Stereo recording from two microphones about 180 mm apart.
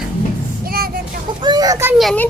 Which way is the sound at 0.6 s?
55° right (ahead or behind).